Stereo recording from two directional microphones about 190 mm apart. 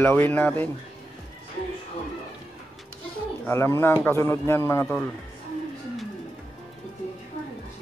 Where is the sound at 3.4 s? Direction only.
15° left (ahead or behind).